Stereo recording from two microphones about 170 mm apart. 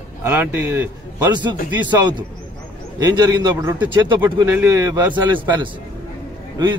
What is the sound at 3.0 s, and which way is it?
A man's voice, 20° right (ahead or behind).